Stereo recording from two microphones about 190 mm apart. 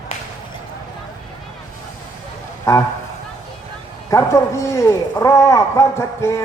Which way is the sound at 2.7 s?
15° left (ahead or behind).